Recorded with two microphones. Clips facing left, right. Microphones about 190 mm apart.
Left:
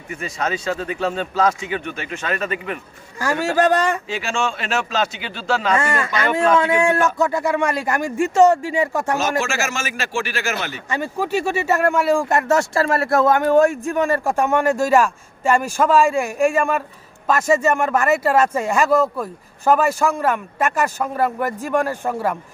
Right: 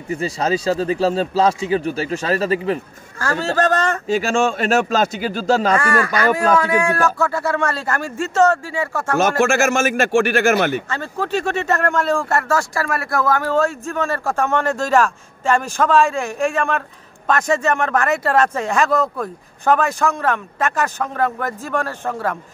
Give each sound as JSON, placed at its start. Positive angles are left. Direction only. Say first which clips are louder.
{"t": 0.1, "sound": "a man's voice", "louder": "right 5 dB", "side_deg": -30}
{"t": 3.2, "sound": "speech", "louder": "left 1 dB", "side_deg": 15}
{"t": 4.1, "sound": "speech", "louder": "right 6 dB", "side_deg": -45}
{"t": 5.8, "sound": "speech", "louder": "right 3 dB", "side_deg": 25}
{"t": 9.4, "sound": "speech", "louder": "right 8 dB", "side_deg": -50}
{"t": 10.9, "sound": "speech", "louder": "left 1 dB", "side_deg": 10}